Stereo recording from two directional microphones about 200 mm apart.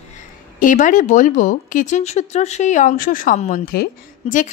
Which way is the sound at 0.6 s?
40° left (ahead or behind).